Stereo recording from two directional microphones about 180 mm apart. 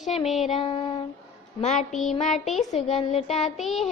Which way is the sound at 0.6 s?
30° left (ahead or behind).